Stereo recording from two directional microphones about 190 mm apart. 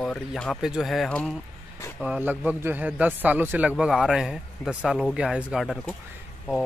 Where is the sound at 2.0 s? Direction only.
5° right (ahead or behind).